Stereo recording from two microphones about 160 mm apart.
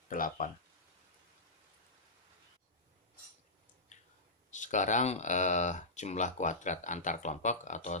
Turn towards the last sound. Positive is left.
turn(degrees=50)  # may be behind; listen again after turning